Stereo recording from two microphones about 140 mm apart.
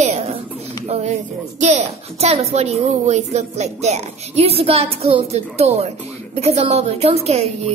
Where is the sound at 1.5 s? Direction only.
55° right (ahead or behind).